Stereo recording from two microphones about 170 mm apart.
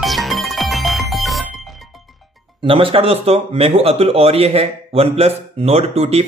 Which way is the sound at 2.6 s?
30° right (ahead or behind).